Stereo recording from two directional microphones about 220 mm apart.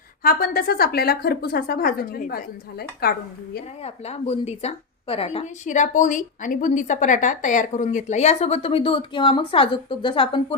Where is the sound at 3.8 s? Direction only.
30° left (ahead or behind).